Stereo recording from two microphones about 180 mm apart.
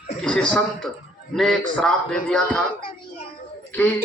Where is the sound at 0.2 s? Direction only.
5° left (ahead or behind).